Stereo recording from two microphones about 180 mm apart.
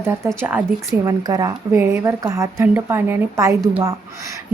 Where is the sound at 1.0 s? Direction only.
20° right (ahead or behind).